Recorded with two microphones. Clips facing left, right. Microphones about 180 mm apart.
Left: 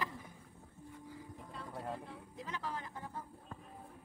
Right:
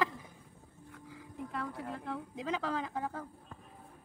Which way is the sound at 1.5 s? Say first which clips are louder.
Right 3 dB; 90° right.